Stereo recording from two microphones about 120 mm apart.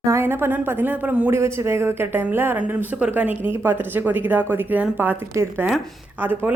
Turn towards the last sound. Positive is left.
turn(degrees=-15)  # may be behind; listen again after turning